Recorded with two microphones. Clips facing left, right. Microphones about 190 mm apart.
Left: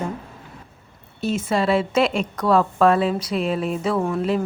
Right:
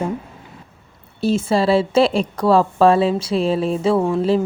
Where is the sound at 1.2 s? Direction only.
30° right (ahead or behind).